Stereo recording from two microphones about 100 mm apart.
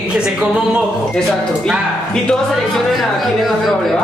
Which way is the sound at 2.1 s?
5° left (ahead or behind).